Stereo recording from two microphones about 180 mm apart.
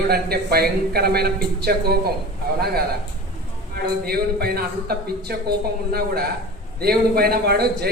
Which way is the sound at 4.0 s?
60° right (ahead or behind).